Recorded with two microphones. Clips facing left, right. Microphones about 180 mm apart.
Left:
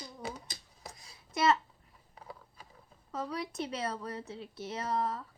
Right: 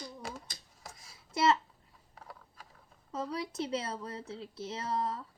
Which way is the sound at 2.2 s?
Centre (ahead or behind).